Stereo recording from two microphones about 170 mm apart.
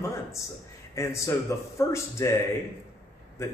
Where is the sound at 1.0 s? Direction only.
15° left (ahead or behind).